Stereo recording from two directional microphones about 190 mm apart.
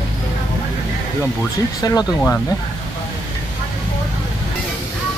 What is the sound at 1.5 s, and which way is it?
Speech, 20° left (ahead or behind).